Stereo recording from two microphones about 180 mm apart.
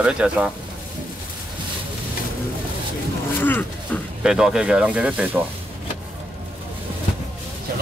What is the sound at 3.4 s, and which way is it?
Wild animals, 10° left (ahead or behind).